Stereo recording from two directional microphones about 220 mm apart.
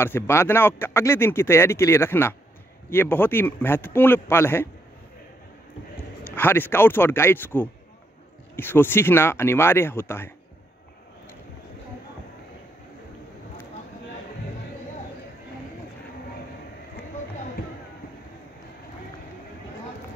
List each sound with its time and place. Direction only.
0.0 s speech: 10° left (ahead or behind)
6.3 s speech: 10° left (ahead or behind)
17.6 s a sound: 40° left (ahead or behind)